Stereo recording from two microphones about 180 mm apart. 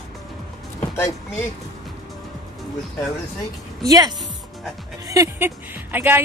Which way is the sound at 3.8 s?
20° right (ahead or behind).